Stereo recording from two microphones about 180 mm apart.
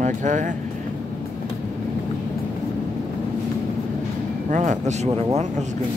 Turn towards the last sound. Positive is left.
turn(degrees=-35)  # may be behind; listen again after turning